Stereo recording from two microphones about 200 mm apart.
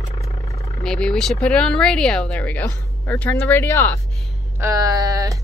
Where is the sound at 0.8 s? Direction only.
5° left (ahead or behind).